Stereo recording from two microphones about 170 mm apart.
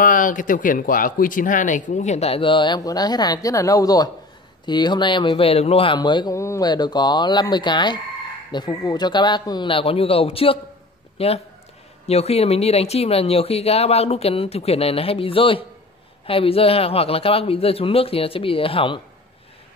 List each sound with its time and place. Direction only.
0.0 s speech: 50° left (ahead or behind); by 18.9 s 30° left (ahead or behind)